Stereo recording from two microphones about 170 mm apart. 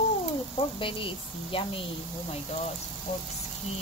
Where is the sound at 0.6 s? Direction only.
30° left (ahead or behind).